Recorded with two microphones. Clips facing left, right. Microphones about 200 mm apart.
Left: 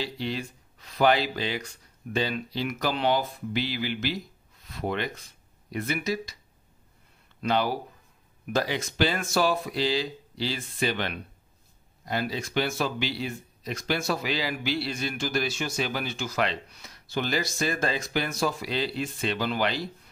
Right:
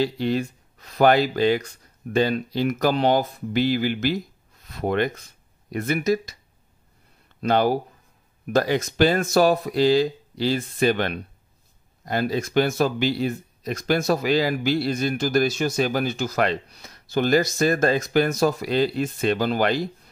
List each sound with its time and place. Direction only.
0.0 s speech: 45° right (ahead or behind)
7.4 s speech: 45° right (ahead or behind)